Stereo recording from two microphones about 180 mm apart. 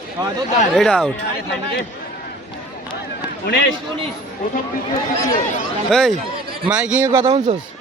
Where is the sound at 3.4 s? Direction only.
90° left.